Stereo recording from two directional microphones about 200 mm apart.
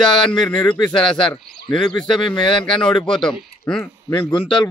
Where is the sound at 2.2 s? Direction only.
25° left (ahead or behind).